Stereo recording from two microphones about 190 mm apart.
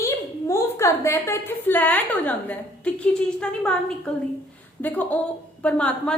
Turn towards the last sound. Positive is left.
turn(degrees=5)  # may be behind; listen again after turning